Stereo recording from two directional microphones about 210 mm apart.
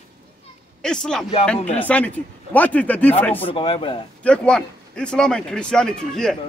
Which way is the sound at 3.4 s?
25° left (ahead or behind).